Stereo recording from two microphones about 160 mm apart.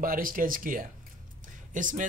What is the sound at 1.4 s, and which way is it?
Music, 55° right (ahead or behind).